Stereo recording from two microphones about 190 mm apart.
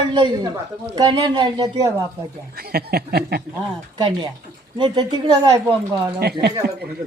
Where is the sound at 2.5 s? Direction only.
55° right (ahead or behind).